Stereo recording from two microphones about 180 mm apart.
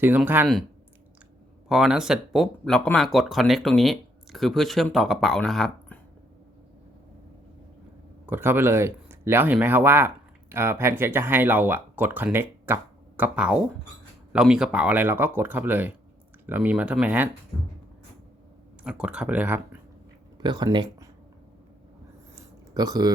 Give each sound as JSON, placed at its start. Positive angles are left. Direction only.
{"t": 0.0, "sound": "speech", "side_deg": -10}
{"t": 1.7, "sound": "speech", "side_deg": -5}
{"t": 8.3, "sound": "speech", "side_deg": -10}
{"t": 18.8, "sound": "speech", "side_deg": -5}
{"t": 20.4, "sound": "speech", "side_deg": -25}
{"t": 22.7, "sound": "speech", "side_deg": -20}